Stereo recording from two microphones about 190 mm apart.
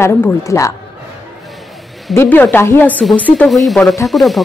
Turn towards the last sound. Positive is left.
turn(degrees=0)  # may be behind; listen again after turning